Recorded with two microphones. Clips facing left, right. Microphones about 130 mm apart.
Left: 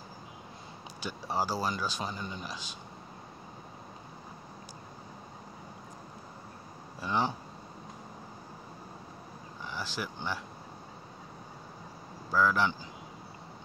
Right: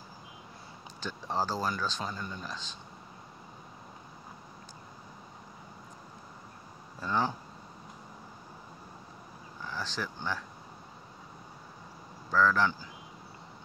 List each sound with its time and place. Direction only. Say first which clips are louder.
1.0 s speech: even; 10° left (ahead or behind)
7.1 s speech: even; 20° left (ahead or behind)
9.8 s speech: even; 10° left (ahead or behind)
12.3 s speech: right 1 dB; 10° left (ahead or behind)